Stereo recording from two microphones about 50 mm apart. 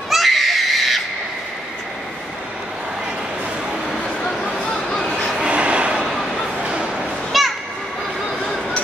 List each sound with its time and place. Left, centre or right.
0.1 s screaming: centre
3.9 s a sound: centre
5.4 s train: right
6.0 s bow-wow: centre
6.6 s bow-wow: centre
7.3 s children playing: centre